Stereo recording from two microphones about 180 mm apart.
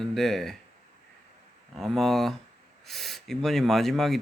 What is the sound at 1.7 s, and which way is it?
Speech, centre (ahead or behind).